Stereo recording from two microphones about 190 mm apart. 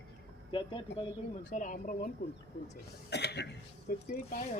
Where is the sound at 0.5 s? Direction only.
25° left (ahead or behind).